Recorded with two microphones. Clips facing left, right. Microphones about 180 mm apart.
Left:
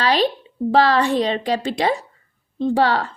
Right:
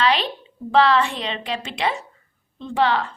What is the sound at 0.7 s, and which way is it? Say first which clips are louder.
A woman's voice: left 1 dB; 35° left (ahead or behind).